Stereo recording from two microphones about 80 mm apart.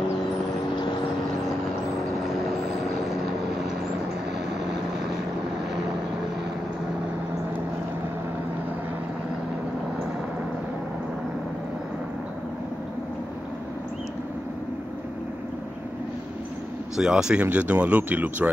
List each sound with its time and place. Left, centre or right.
16.9 s speech: centre